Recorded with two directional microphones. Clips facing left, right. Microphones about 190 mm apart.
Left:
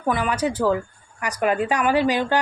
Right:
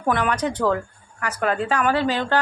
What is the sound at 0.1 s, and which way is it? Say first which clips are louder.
A woman's voice: even; 5° left (ahead or behind).